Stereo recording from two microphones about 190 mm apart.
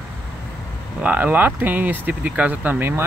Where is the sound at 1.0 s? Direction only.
10° right (ahead or behind).